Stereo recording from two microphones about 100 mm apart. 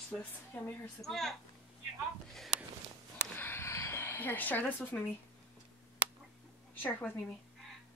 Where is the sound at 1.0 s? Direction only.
5° left (ahead or behind).